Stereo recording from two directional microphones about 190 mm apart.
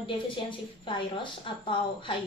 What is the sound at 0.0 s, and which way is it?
A woman's voice, 25° left (ahead or behind).